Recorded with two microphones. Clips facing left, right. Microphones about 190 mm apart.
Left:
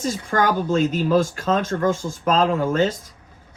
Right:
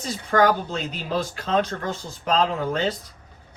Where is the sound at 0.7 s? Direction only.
45° left (ahead or behind).